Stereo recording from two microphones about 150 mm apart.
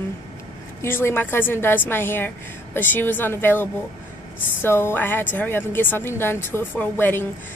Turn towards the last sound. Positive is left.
turn(degrees=15)  # may be behind; listen again after turning